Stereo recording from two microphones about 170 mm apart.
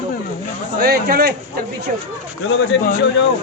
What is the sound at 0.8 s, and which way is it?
Speech, 65° right (ahead or behind).